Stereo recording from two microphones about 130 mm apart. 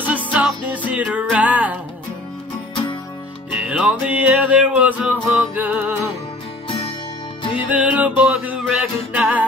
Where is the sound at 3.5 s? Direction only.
10° right (ahead or behind).